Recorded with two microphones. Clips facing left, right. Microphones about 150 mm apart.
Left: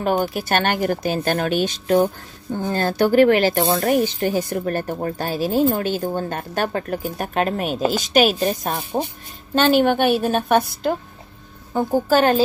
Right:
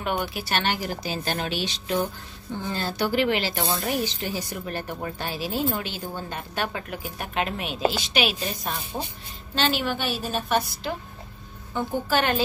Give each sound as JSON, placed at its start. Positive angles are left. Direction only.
{"t": 0.0, "sound": "a woman's voice", "side_deg": 40}